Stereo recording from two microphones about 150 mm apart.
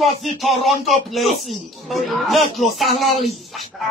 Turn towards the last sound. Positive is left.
turn(degrees=0)  # may be behind; listen again after turning